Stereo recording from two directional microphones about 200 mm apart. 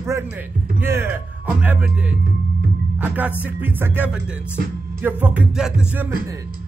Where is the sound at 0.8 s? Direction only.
10° right (ahead or behind).